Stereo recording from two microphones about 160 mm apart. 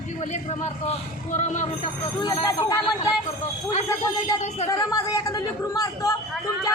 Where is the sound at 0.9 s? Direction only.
50° left (ahead or behind).